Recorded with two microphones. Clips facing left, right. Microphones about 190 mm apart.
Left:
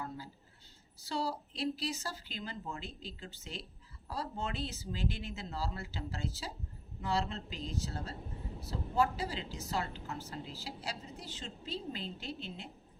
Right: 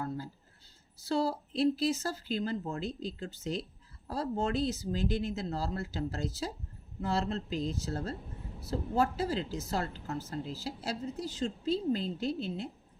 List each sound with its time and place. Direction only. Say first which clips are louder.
1.0 s a woman's voice: right 6 dB; 45° right (ahead or behind)